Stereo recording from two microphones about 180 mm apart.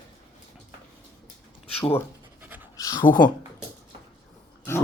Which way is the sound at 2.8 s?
20° left (ahead or behind).